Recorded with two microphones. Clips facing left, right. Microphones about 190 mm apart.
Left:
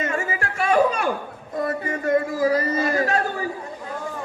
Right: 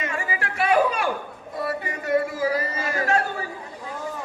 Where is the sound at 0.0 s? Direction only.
45° left (ahead or behind).